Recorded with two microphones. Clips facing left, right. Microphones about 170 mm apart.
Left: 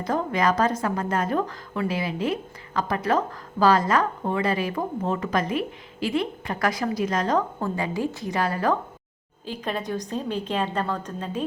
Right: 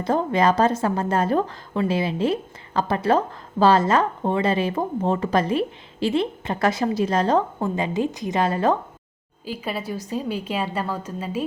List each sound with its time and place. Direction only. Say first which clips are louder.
0.0 s a woman's voice: right 4 dB; 30° right (ahead or behind)
9.5 s a woman's voice: even; 5° right (ahead or behind)